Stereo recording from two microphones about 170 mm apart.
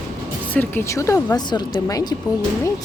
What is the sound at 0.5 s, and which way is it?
Speech, 10° left (ahead or behind).